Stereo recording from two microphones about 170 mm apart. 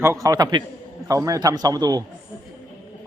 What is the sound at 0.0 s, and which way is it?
A man's voice, 15° right (ahead or behind).